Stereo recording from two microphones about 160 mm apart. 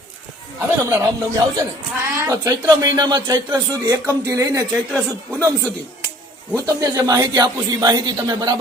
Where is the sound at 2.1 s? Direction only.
20° right (ahead or behind).